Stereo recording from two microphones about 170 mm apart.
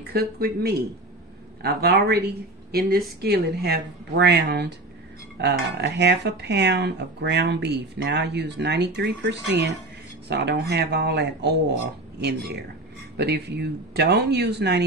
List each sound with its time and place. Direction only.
0.0 s speech: 65° right (ahead or behind); by 9.8 s 90° right
10.2 s speech: 80° right